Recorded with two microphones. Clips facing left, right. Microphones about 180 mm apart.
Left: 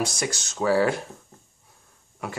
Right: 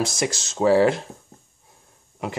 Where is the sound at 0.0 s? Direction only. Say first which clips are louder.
Right 3 dB; 25° right (ahead or behind).